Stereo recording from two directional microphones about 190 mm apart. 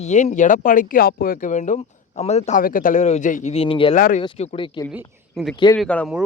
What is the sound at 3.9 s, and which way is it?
Speech, 45° left (ahead or behind).